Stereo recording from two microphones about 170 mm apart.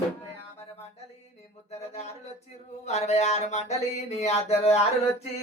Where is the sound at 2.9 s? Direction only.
40° left (ahead or behind).